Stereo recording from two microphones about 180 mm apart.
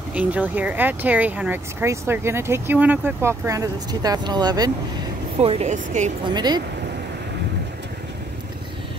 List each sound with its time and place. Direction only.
0.1 s speech: 10° right (ahead or behind)
5.4 s speech: 35° right (ahead or behind)
6.2 s speech: 25° right (ahead or behind)